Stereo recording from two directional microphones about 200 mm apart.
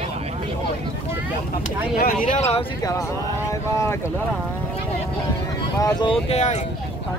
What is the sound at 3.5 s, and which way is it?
Boat, 15° left (ahead or behind).